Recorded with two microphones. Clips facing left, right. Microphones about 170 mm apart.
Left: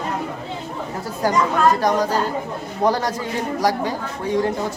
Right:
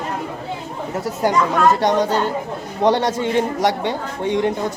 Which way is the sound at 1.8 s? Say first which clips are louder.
Right 2 dB; 25° right (ahead or behind).